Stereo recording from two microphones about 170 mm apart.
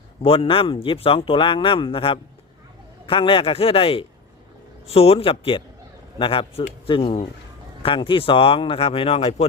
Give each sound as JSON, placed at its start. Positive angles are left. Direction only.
{"t": 0.2, "sound": "speech", "side_deg": 35}